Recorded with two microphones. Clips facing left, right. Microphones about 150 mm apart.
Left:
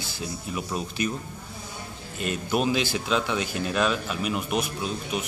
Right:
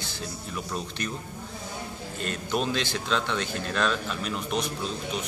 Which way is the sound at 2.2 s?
10° left (ahead or behind).